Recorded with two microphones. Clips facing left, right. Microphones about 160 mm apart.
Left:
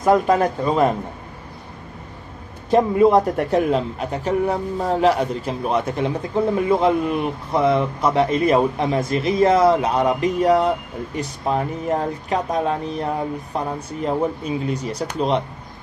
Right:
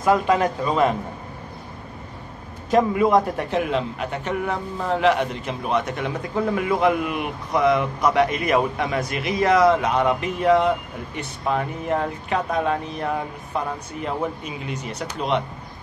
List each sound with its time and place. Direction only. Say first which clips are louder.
0.0 s a man's voice: left 3 dB; 35° left (ahead or behind)
2.7 s a man's voice: left 3 dB; 30° left (ahead or behind)
3.3 s a man's voice: left 4 dB; 40° left (ahead or behind)